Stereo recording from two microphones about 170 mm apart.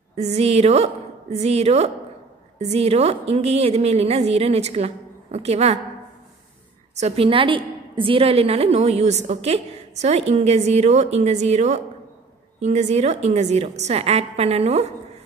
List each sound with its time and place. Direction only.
0.1 s a woman's voice: 40° right (ahead or behind)
7.0 s a woman's voice: 35° right (ahead or behind)